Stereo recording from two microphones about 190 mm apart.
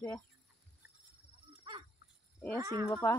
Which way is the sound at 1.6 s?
25° right (ahead or behind).